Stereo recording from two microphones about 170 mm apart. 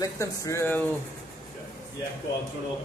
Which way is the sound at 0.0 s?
20° left (ahead or behind).